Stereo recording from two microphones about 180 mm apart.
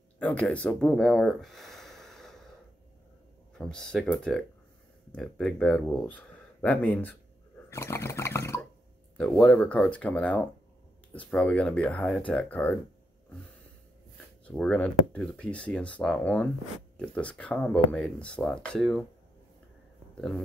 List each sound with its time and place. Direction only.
0.2 s speech: 5° left (ahead or behind)
3.5 s speech: 5° left (ahead or behind)
7.7 s a sound: 15° left (ahead or behind)
9.2 s speech: 5° left (ahead or behind)
14.4 s speech: 5° left (ahead or behind)
20.2 s speech: 5° left (ahead or behind)